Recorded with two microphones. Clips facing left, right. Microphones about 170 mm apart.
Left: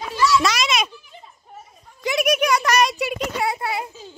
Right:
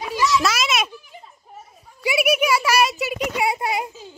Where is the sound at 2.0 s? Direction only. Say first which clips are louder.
Even; 10° right (ahead or behind).